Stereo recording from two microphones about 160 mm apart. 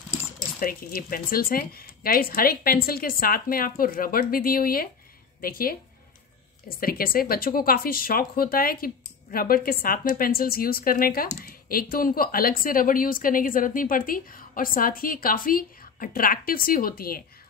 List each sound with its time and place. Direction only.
0.6 s speech: 65° left (ahead or behind)